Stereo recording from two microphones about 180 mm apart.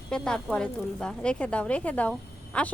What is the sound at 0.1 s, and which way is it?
Speech, 5° left (ahead or behind).